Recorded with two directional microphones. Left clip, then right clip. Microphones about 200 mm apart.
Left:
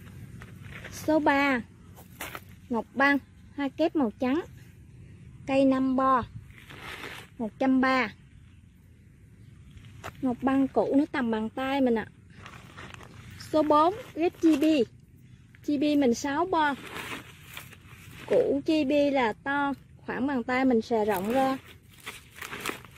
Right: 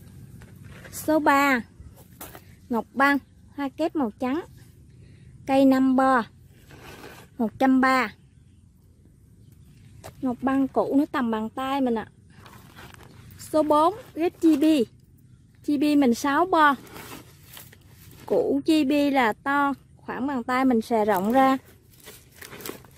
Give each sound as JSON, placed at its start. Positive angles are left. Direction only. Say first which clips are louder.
{"t": 0.4, "sound": "a sound", "louder": "left 3 dB", "side_deg": -15}
{"t": 2.7, "sound": "speech", "louder": "right 3 dB", "side_deg": -15}
{"t": 5.4, "sound": "a child's voice", "louder": "right 4 dB", "side_deg": -20}
{"t": 7.3, "sound": "a child's voice", "louder": "right 5 dB", "side_deg": -25}
{"t": 10.2, "sound": "speech", "louder": "right 2 dB", "side_deg": -5}
{"t": 13.0, "sound": "a sound", "louder": "left 1 dB", "side_deg": -10}
{"t": 14.6, "sound": "a child's voice", "louder": "right 3 dB", "side_deg": -20}
{"t": 18.5, "sound": "a child's voice", "louder": "right 3 dB", "side_deg": -20}
{"t": 20.1, "sound": "a child's voice", "louder": "right 2 dB", "side_deg": 0}